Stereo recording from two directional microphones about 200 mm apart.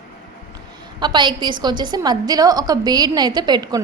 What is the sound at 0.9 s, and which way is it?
A woman's voice, 20° right (ahead or behind).